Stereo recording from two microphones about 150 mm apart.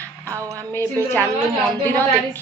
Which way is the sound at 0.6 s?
15° left (ahead or behind).